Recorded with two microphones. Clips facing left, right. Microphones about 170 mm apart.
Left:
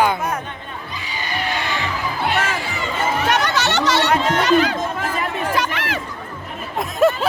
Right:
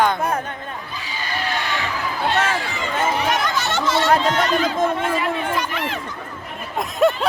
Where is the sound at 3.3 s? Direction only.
80° left.